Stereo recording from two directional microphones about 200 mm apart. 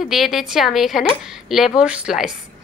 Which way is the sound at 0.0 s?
Centre (ahead or behind).